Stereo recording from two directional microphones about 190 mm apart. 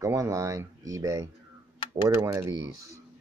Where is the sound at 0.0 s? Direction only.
15° right (ahead or behind).